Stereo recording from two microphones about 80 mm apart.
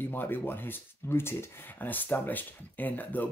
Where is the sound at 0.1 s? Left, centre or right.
Left.